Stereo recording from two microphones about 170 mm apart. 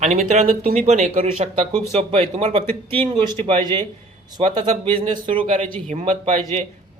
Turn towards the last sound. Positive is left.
turn(degrees=-45)  # may be behind; listen again after turning